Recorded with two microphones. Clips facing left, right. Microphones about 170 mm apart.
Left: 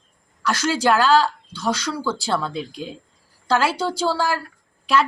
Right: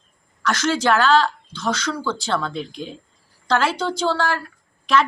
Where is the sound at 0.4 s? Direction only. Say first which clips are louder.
Even; 10° left (ahead or behind).